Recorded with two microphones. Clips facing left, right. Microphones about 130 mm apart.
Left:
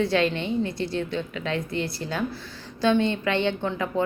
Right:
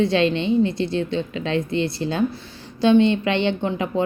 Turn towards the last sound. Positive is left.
turn(degrees=-15)  # may be behind; listen again after turning